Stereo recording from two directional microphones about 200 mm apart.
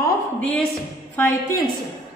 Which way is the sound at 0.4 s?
5° left (ahead or behind).